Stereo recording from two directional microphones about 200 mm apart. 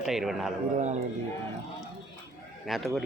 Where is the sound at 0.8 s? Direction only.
35° right (ahead or behind).